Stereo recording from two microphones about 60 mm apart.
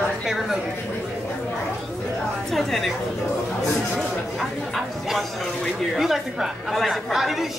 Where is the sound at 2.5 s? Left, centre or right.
Centre.